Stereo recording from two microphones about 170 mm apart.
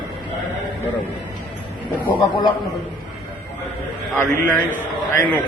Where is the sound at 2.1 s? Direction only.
30° left (ahead or behind).